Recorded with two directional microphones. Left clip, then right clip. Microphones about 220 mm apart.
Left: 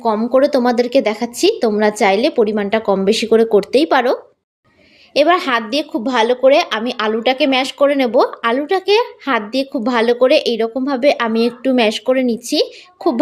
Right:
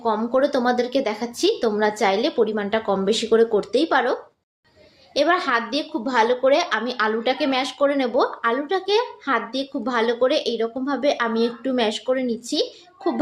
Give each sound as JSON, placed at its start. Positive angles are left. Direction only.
{"t": 0.0, "sound": "a woman's voice", "side_deg": 35}